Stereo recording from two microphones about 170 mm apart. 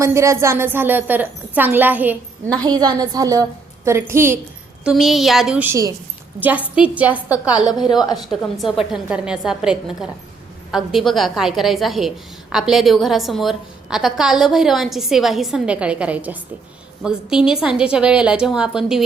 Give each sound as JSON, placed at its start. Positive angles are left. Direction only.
{"t": 0.0, "sound": "a woman's voice", "side_deg": -15}
{"t": 2.6, "sound": "a woman's voice", "side_deg": -25}
{"t": 4.8, "sound": "a woman's voice", "side_deg": -5}
{"t": 7.7, "sound": "a woman's voice", "side_deg": 25}
{"t": 8.8, "sound": "a woman's voice", "side_deg": -5}